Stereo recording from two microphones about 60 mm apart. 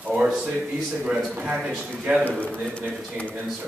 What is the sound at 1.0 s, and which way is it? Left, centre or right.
Speech, centre.